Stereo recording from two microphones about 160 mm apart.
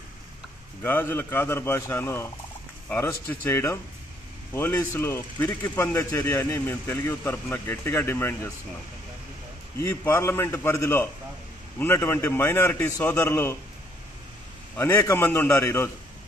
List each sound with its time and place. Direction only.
0.8 s speech: 10° left (ahead or behind)
9.8 s speech: 15° left (ahead or behind)
14.8 s speech: 10° left (ahead or behind)